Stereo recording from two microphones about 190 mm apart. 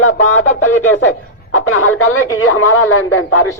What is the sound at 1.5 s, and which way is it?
Speech, 90° left.